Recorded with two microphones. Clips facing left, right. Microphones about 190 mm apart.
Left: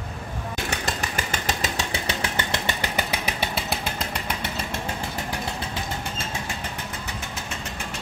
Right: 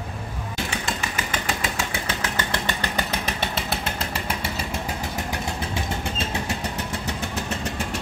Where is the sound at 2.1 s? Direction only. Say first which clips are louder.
Even; 15° left (ahead or behind); by 4.5 s 5° right (ahead or behind).